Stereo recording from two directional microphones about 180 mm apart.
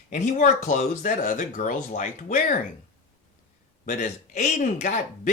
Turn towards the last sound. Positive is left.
turn(degrees=45)  # may be behind; listen again after turning